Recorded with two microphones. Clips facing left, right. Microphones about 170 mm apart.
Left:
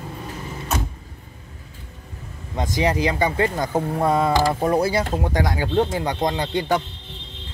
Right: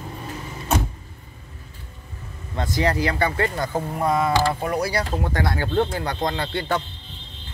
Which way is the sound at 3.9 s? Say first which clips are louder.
Left 1 dB; 30° left (ahead or behind).